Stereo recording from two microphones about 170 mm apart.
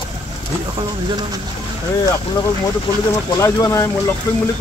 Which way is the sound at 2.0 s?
20° left (ahead or behind).